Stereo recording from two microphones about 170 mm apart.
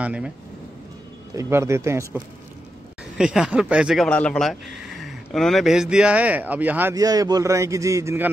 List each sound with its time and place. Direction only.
0.0 s speech: 5° right (ahead or behind)
1.3 s speech: 15° right (ahead or behind)
3.2 s speech: 5° right (ahead or behind)